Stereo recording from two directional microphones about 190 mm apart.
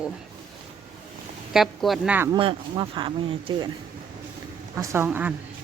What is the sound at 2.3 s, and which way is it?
Speech, 25° right (ahead or behind).